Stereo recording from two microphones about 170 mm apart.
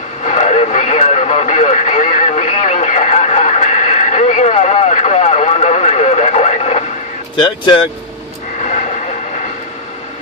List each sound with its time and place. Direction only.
0.2 s radio: 40° left (ahead or behind)
7.3 s speech: 25° left (ahead or behind)